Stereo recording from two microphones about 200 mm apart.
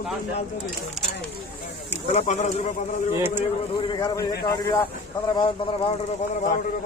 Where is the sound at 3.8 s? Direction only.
20° left (ahead or behind).